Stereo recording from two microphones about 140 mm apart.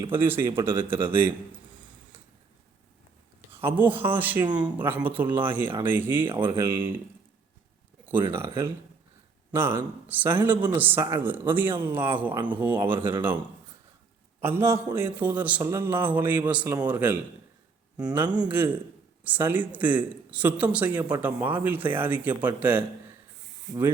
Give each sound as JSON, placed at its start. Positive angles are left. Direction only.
{"t": 0.0, "sound": "speech", "side_deg": -15}
{"t": 3.5, "sound": "speech", "side_deg": -15}
{"t": 8.0, "sound": "speech", "side_deg": -15}
{"t": 14.4, "sound": "speech", "side_deg": -15}